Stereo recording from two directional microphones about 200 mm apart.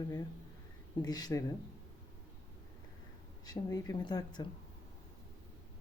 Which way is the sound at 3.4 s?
20° left (ahead or behind).